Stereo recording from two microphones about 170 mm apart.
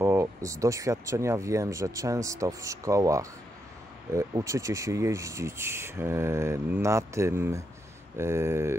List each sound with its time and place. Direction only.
0.0 s speech: 15° right (ahead or behind)